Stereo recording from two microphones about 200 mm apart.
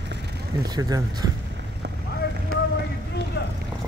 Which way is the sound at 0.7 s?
20° right (ahead or behind).